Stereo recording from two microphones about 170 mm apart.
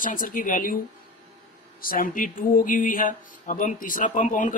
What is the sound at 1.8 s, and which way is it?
Speech, 55° left (ahead or behind).